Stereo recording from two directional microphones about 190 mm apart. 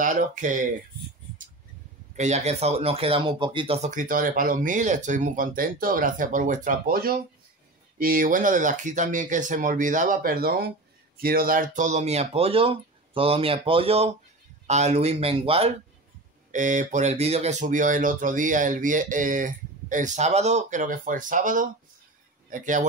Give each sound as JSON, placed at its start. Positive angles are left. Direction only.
{"t": 0.0, "sound": "speech", "side_deg": -45}
{"t": 2.1, "sound": "speech", "side_deg": -35}
{"t": 16.5, "sound": "speech", "side_deg": -40}